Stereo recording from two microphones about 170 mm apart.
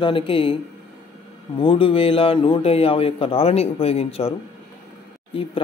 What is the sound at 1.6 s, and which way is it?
Speech, 30° left (ahead or behind).